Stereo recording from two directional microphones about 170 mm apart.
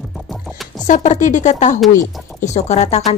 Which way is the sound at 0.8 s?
45° left (ahead or behind).